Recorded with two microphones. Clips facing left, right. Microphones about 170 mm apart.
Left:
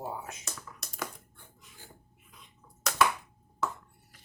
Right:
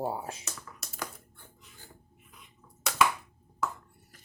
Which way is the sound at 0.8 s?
Centre (ahead or behind).